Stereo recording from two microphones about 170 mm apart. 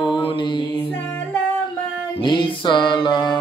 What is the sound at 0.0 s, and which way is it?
Mantra, 30° left (ahead or behind).